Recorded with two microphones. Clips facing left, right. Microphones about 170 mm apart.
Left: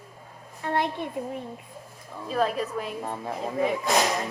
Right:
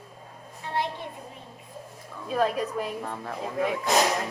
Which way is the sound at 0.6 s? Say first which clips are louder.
Left 4 dB; 55° left (ahead or behind).